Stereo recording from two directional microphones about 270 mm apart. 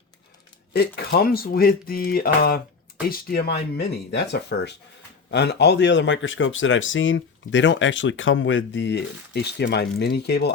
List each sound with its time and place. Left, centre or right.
0.7 s speech: left